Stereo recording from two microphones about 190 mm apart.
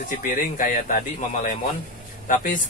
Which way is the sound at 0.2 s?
45° left (ahead or behind).